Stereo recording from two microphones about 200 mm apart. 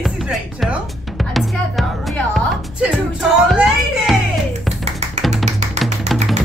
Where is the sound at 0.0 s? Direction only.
Centre (ahead or behind).